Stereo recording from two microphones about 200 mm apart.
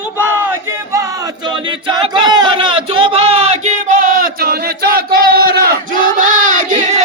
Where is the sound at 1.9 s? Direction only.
20° right (ahead or behind).